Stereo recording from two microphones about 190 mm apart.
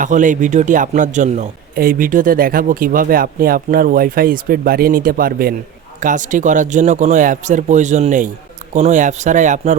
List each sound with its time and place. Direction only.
0.0 s a man's voice: 40° right (ahead or behind)